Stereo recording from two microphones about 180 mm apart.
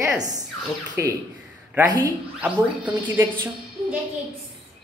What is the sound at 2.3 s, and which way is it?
Speech, 5° right (ahead or behind).